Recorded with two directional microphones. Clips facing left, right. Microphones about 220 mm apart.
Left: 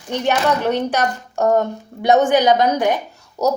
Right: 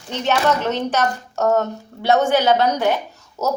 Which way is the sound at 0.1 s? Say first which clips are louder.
Left 1 dB; 15° left (ahead or behind).